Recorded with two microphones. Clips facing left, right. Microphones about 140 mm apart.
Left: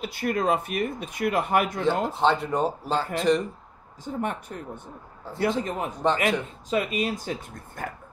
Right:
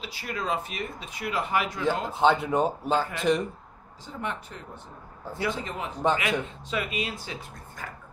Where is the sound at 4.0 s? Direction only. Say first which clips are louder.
Left 5 dB; 50° left (ahead or behind).